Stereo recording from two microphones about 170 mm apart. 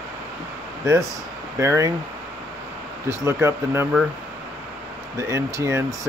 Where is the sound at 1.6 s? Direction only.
15° right (ahead or behind).